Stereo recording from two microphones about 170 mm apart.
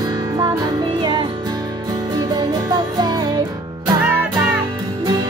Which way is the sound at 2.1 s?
25° right (ahead or behind).